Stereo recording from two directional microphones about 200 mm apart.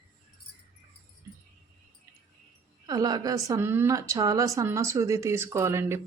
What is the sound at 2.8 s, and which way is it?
A woman's voice, 20° right (ahead or behind).